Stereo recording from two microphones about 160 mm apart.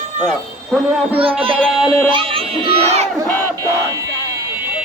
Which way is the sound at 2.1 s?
35° right (ahead or behind).